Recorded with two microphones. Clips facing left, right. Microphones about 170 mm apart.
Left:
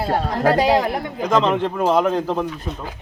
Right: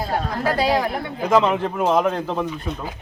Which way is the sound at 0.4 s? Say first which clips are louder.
Left 5 dB; 45° left (ahead or behind).